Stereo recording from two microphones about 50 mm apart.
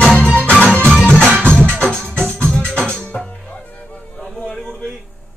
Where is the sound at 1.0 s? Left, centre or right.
Centre.